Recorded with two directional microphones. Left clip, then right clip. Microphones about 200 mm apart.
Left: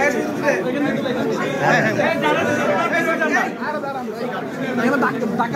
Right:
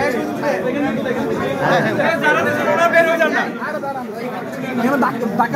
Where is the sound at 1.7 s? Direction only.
55° left (ahead or behind).